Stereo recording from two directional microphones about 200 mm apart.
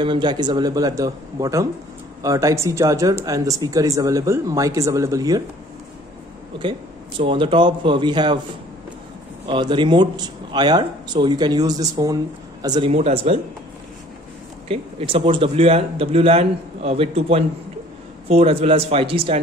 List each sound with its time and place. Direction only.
0.0 s a man's voice: 20° right (ahead or behind)
7.2 s a man's voice: 25° right (ahead or behind)
9.5 s a man's voice: 25° right (ahead or behind)
14.7 s a man's voice: 30° right (ahead or behind)